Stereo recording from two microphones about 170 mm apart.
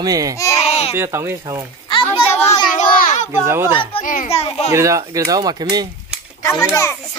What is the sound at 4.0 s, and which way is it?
Speech, 50° left (ahead or behind).